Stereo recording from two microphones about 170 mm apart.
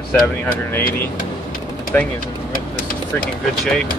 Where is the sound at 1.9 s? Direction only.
10° left (ahead or behind).